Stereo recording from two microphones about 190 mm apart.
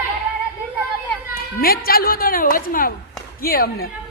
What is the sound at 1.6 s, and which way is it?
A man's voice, 50° left (ahead or behind).